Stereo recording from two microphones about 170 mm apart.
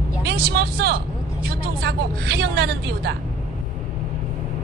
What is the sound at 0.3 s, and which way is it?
A woman's voice, 70° right (ahead or behind).